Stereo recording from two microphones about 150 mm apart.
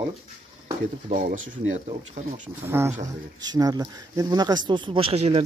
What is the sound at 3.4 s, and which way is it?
Speech, 25° right (ahead or behind).